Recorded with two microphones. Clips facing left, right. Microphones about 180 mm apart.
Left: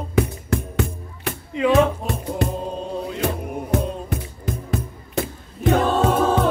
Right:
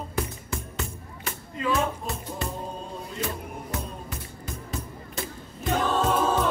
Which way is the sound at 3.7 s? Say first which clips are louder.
Left 13 dB; 65° left (ahead or behind).